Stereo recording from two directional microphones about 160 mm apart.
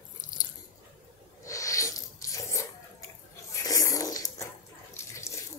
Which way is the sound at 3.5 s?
20° left (ahead or behind).